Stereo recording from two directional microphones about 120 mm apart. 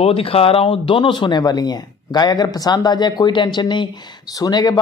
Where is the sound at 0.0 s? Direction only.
50° left (ahead or behind).